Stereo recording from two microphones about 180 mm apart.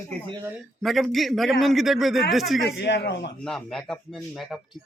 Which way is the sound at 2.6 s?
65° left (ahead or behind).